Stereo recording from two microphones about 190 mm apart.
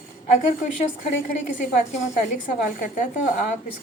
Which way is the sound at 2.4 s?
45° left (ahead or behind).